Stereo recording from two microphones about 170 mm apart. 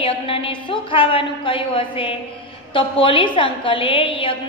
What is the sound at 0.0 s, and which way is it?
A woman's voice, 35° left (ahead or behind).